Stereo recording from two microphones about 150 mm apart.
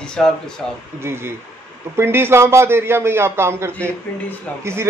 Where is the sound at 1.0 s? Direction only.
15° right (ahead or behind).